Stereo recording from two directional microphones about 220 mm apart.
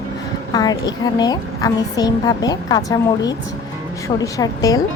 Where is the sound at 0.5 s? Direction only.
15° left (ahead or behind).